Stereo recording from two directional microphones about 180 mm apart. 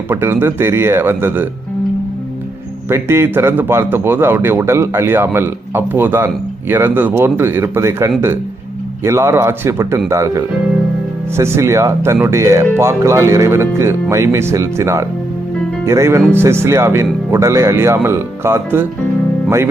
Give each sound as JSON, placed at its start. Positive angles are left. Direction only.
{"t": 0.1, "sound": "speech", "side_deg": -15}
{"t": 2.9, "sound": "speech", "side_deg": -15}